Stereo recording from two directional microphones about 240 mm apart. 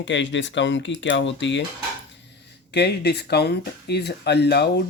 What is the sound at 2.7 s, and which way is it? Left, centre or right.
Speech, left.